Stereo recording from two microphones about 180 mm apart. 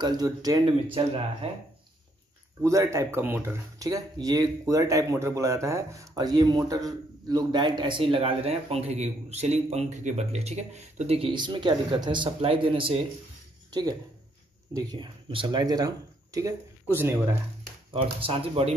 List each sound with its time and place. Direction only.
0.0 s speech: 20° right (ahead or behind)
0.9 s speech: 30° right (ahead or behind)
2.6 s speech: 15° right (ahead or behind)
17.9 s speech: 30° right (ahead or behind)